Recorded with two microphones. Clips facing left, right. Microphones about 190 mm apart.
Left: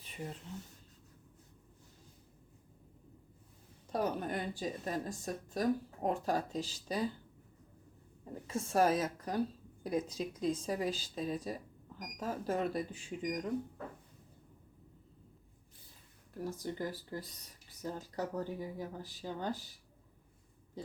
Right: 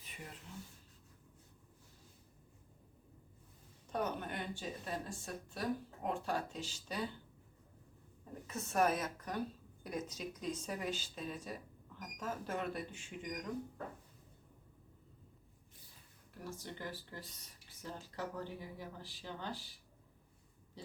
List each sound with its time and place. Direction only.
3.9 s speech: 35° left (ahead or behind)
8.2 s a woman's voice: 30° left (ahead or behind)
16.4 s speech: 40° left (ahead or behind)